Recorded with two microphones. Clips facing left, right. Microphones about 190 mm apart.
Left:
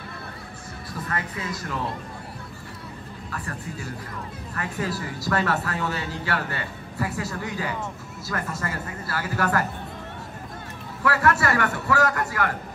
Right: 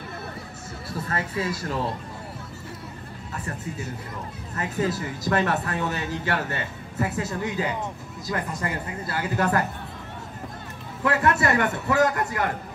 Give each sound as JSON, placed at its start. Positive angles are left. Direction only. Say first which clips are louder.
{"t": 0.9, "sound": "speech", "louder": "right 3 dB", "side_deg": -30}
{"t": 3.3, "sound": "speech", "louder": "right 1 dB", "side_deg": -20}
{"t": 11.1, "sound": "speech", "louder": "even", "side_deg": -20}